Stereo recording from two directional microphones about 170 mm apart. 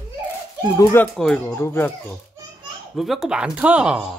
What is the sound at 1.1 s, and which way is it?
Speech, 5° left (ahead or behind).